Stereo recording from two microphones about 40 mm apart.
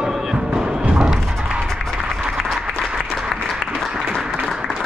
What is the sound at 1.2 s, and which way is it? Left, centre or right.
Music, centre.